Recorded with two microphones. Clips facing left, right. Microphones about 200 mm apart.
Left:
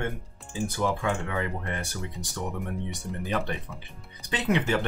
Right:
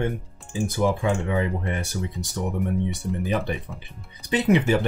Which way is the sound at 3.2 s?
10° right (ahead or behind).